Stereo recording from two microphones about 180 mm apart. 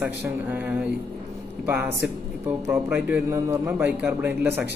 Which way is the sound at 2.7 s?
10° right (ahead or behind).